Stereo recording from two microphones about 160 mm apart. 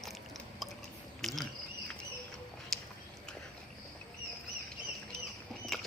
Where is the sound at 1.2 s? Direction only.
Centre (ahead or behind).